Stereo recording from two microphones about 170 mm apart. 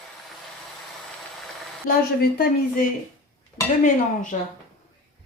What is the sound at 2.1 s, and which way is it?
Speech, 70° left (ahead or behind).